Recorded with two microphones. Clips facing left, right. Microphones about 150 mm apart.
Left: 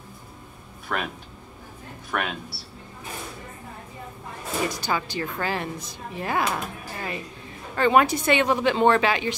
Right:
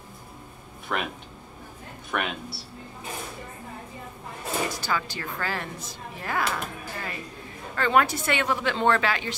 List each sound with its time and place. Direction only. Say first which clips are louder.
0.9 s speech: even; centre (ahead or behind)
4.8 s speech: left 3 dB; 20° left (ahead or behind)